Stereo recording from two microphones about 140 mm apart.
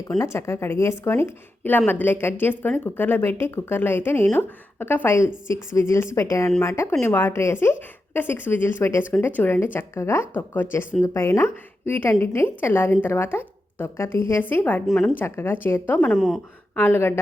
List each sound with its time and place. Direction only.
0.2 s a woman's voice: 20° left (ahead or behind)
14.8 s a woman's voice: centre (ahead or behind)
15.2 s a woman's voice: 15° left (ahead or behind)
16.1 s a woman's voice: centre (ahead or behind)
16.7 s a woman's voice: 15° left (ahead or behind)